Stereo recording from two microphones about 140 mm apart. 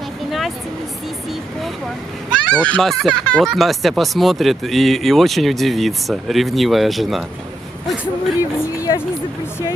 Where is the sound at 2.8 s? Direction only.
Centre (ahead or behind).